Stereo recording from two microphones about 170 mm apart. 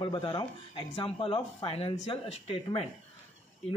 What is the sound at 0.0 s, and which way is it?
Speech, 30° left (ahead or behind).